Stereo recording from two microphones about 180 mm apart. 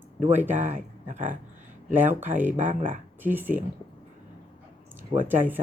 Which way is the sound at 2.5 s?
45° right (ahead or behind).